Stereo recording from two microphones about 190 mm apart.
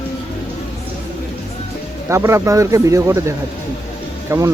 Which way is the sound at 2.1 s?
15° right (ahead or behind).